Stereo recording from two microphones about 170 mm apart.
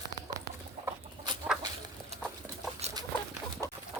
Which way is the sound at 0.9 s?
25° right (ahead or behind).